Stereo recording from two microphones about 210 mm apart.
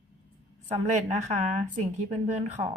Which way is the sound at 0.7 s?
30° right (ahead or behind).